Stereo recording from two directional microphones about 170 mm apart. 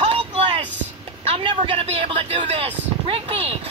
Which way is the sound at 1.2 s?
30° right (ahead or behind).